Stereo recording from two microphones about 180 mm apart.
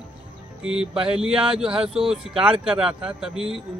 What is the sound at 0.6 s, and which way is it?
A man's voice, 5° right (ahead or behind).